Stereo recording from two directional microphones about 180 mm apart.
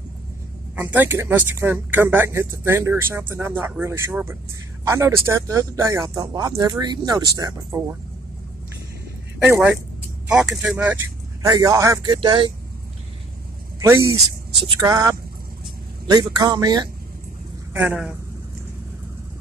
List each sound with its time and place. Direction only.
0.7 s speech: 10° right (ahead or behind)
9.4 s speech: 10° right (ahead or behind)
11.4 s speech: 20° right (ahead or behind)
13.7 s speech: 15° right (ahead or behind)
16.3 s speech: 20° right (ahead or behind)
17.7 s speech: 5° right (ahead or behind)